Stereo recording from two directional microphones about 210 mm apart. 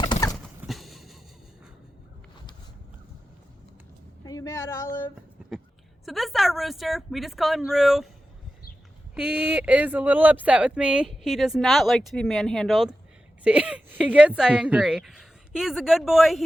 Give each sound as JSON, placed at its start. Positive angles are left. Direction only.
{"t": 0.0, "sound": "clip-clop", "side_deg": 20}
{"t": 0.4, "sound": "horse", "side_deg": 0}
{"t": 4.2, "sound": "vehicle", "side_deg": 15}
{"t": 5.4, "sound": "a sound", "side_deg": -5}
{"t": 6.1, "sound": "speech", "side_deg": 0}
{"t": 9.1, "sound": "speech", "side_deg": -5}